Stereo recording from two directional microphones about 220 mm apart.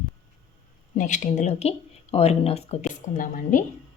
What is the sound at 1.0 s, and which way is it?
Speech, 35° left (ahead or behind).